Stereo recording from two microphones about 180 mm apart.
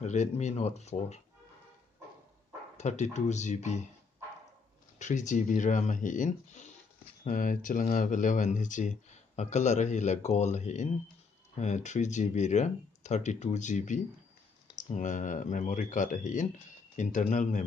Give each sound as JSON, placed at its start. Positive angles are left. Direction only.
{"t": 0.0, "sound": "speech", "side_deg": 40}
{"t": 2.8, "sound": "speech", "side_deg": 40}
{"t": 4.9, "sound": "speech", "side_deg": 45}